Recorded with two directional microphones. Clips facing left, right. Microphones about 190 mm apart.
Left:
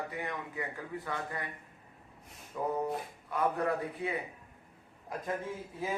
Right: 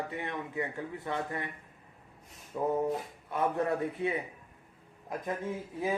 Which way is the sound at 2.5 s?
20° right (ahead or behind).